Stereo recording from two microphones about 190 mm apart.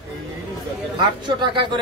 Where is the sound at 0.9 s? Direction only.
25° right (ahead or behind).